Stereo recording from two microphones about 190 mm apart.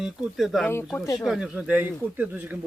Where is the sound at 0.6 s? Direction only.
10° left (ahead or behind).